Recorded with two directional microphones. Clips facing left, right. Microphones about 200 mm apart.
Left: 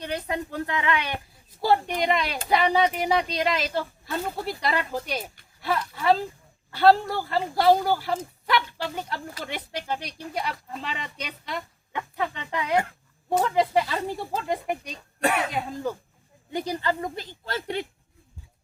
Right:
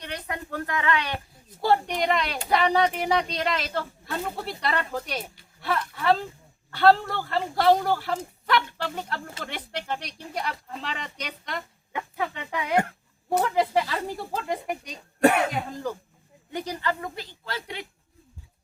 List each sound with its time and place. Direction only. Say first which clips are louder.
0.0 s speech: left 5 dB; 25° left (ahead or behind)
1.6 s speech: even; centre (ahead or behind)
15.2 s speech: right 5 dB; 45° right (ahead or behind)
15.5 s speech: left 1 dB; 5° left (ahead or behind)
17.2 s a woman's voice: left 3 dB; 45° left (ahead or behind)